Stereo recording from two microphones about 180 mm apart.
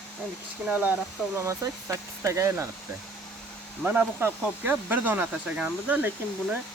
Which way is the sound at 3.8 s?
10° right (ahead or behind).